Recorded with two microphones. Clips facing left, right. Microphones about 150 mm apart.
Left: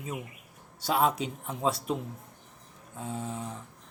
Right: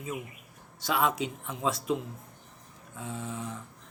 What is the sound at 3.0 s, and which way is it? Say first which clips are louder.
Speech: left 1 dB; 35° left (ahead or behind).